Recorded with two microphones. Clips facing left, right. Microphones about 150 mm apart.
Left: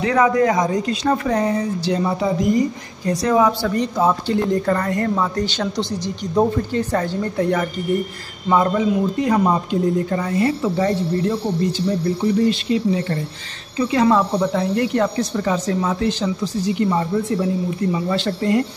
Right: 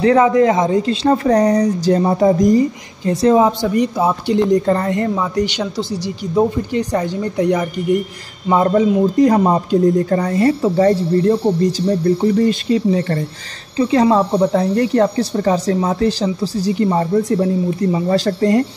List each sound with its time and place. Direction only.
0.0 s speech: 25° right (ahead or behind); by 2.6 s 45° right (ahead or behind)
3.1 s a woman's voice: 25° right (ahead or behind)
3.6 s speech: 15° right (ahead or behind)
8.5 s speech: 35° right (ahead or behind)
13.7 s speech: 30° right (ahead or behind)